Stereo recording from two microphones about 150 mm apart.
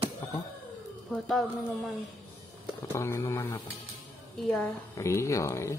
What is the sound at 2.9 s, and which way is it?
Speech, 15° left (ahead or behind).